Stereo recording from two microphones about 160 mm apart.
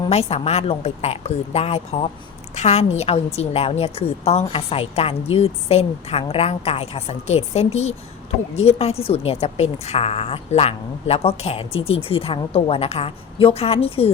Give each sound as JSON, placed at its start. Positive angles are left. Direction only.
{"t": 0.1, "sound": "a woman's voice", "side_deg": 40}